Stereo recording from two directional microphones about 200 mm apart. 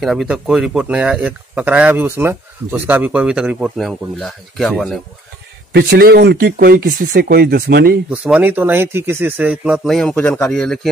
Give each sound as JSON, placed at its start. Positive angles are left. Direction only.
{"t": 0.0, "sound": "speech", "side_deg": 0}
{"t": 5.7, "sound": "speech", "side_deg": -55}
{"t": 8.1, "sound": "speech", "side_deg": -5}